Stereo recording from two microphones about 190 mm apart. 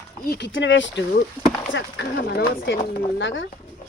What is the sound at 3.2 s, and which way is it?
Speech, 80° left.